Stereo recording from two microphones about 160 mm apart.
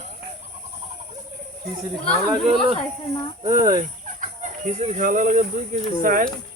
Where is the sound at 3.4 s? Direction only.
50° right (ahead or behind).